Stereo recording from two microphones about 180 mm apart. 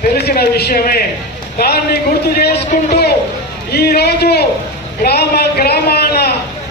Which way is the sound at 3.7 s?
60° left (ahead or behind).